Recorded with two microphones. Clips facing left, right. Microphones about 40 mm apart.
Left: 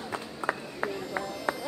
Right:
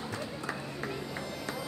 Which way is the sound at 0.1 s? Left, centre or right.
Left.